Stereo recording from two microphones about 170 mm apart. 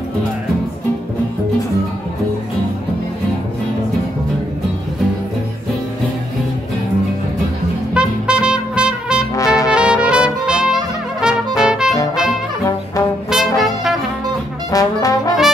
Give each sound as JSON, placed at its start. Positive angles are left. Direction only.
{"t": 7.9, "sound": "music", "side_deg": -5}
{"t": 9.7, "sound": "trumpet", "side_deg": -5}
{"t": 13.3, "sound": "brass instrument", "side_deg": 0}
{"t": 14.7, "sound": "trombone", "side_deg": 20}